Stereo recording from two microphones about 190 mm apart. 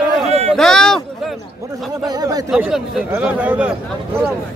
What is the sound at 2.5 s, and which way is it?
A man's voice, 5° right (ahead or behind).